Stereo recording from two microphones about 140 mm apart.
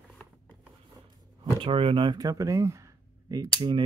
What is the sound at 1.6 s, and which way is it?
Speech, 40° right (ahead or behind).